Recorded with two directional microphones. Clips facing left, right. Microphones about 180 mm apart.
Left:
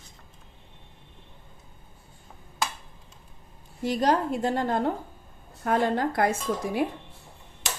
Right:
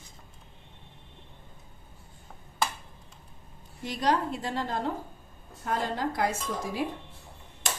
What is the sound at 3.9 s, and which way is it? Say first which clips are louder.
A woman's voice: left 4 dB; 45° left (ahead or behind).